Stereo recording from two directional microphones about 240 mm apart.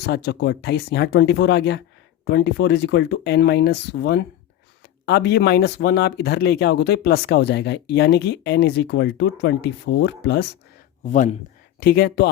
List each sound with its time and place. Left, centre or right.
0.0 s speech: left
11.0 s speech: left